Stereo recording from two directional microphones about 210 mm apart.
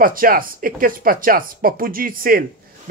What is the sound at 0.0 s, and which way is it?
A man's voice, 40° right (ahead or behind).